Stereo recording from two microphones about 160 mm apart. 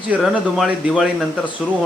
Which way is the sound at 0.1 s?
5° right (ahead or behind).